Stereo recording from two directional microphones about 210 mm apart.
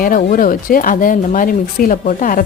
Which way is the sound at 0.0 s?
40° left (ahead or behind).